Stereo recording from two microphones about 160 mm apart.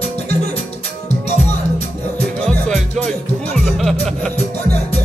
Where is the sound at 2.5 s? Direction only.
5° left (ahead or behind).